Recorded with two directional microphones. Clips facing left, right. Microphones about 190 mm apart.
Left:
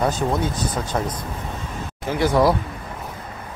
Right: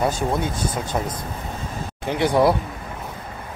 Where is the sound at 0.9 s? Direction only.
10° right (ahead or behind).